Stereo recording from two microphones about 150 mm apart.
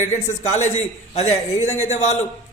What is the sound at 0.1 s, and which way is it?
A man's voice, 50° left (ahead or behind).